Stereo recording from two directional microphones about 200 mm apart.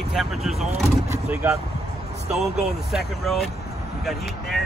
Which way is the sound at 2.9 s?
Centre (ahead or behind).